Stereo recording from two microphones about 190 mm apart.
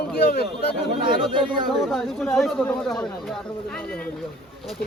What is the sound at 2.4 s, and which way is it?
Speech, centre (ahead or behind).